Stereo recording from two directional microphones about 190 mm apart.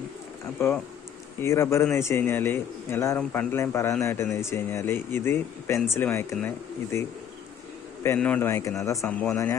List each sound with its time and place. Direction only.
1.4 s a man's voice: 15° left (ahead or behind)
9.0 s speech: 5° left (ahead or behind)